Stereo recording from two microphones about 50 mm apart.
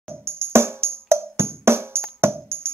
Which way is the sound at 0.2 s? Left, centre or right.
Right.